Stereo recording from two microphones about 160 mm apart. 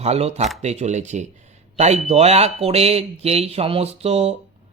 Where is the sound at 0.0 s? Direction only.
40° right (ahead or behind).